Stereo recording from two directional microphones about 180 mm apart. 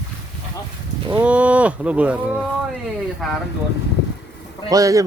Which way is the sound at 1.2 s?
5° right (ahead or behind).